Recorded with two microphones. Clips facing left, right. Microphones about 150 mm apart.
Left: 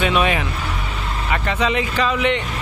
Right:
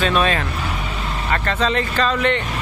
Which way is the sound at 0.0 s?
15° left (ahead or behind).